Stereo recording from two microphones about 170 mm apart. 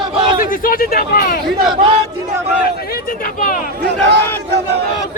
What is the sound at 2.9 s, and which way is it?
Speech, 55° left (ahead or behind).